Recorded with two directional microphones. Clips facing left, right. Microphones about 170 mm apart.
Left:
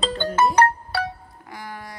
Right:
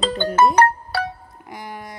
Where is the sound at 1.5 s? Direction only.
20° right (ahead or behind).